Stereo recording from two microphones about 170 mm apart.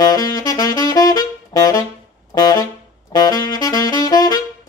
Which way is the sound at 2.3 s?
25° left (ahead or behind).